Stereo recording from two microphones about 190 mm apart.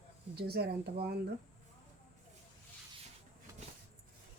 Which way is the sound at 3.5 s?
15° right (ahead or behind).